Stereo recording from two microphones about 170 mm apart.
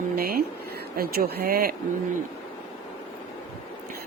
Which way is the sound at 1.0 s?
65° right (ahead or behind).